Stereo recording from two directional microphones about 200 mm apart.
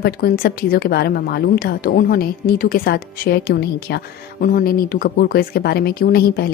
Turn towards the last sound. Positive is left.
turn(degrees=50)  # may be behind; listen again after turning